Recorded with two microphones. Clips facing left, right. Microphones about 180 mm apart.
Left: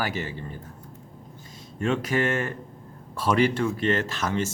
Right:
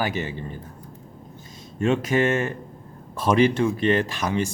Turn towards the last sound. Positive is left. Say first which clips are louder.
# right 2 dB
turn(degrees=-15)  # may be behind; listen again after turning